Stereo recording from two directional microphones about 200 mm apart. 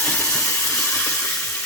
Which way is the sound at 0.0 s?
10° left (ahead or behind).